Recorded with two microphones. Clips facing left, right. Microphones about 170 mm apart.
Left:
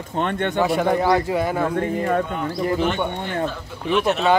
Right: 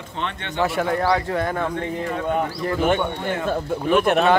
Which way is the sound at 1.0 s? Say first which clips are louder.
Left 2 dB; 10° left (ahead or behind).